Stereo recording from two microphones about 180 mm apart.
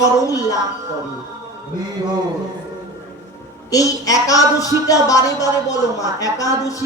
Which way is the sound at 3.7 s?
20° left (ahead or behind).